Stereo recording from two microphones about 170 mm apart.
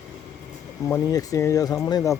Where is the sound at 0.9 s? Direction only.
20° left (ahead or behind).